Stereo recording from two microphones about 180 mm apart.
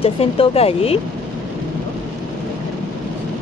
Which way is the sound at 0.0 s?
30° left (ahead or behind).